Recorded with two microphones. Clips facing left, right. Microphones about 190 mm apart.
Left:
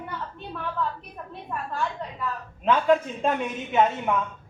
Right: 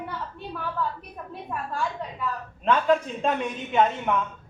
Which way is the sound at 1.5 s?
5° right (ahead or behind).